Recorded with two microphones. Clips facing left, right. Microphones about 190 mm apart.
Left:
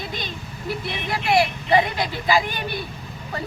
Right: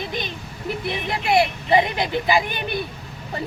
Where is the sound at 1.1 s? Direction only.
25° right (ahead or behind).